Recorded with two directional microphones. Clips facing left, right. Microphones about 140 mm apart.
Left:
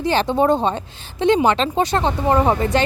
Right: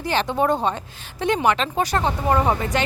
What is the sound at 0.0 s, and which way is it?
Speech, 30° left (ahead or behind).